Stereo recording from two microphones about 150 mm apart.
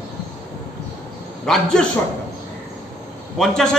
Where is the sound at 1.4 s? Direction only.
5° left (ahead or behind).